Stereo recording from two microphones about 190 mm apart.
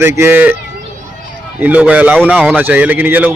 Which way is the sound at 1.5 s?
10° right (ahead or behind).